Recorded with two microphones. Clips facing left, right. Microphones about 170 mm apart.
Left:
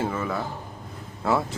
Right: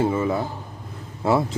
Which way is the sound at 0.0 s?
20° right (ahead or behind).